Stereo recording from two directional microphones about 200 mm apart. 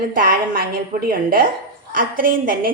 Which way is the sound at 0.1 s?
45° right (ahead or behind).